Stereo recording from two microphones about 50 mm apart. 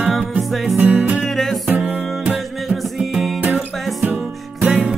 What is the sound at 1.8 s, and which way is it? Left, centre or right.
Music, right.